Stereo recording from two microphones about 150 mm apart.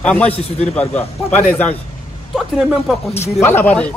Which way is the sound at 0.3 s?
45° left (ahead or behind).